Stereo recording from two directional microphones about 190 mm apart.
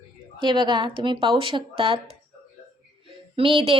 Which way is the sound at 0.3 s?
25° right (ahead or behind).